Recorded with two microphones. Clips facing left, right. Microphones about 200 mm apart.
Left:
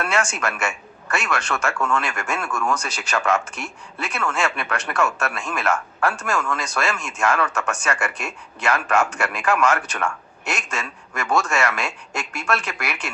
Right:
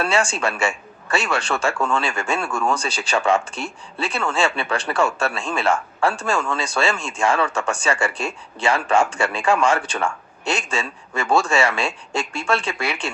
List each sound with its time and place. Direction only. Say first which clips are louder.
0.0 s speech: right 3 dB; 30° right (ahead or behind)